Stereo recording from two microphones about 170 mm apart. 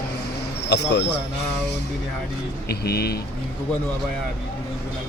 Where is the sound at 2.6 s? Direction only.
65° left (ahead or behind).